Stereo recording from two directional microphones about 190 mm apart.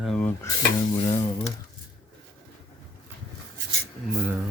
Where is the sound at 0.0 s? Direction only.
5° left (ahead or behind); by 1.3 s 25° left (ahead or behind).